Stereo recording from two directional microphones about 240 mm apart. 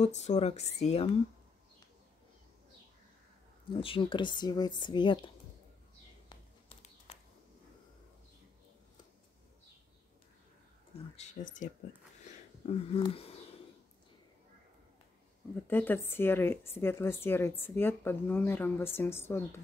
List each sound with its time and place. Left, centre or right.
0.0 s speech: left
3.7 s speech: left
11.1 s speech: left
15.6 s speech: centre